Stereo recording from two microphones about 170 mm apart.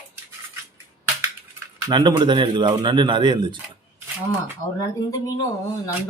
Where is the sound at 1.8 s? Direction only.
25° right (ahead or behind).